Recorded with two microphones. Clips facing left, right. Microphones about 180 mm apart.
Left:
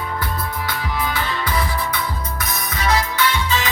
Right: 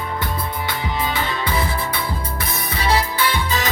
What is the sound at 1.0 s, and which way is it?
Music, 25° right (ahead or behind).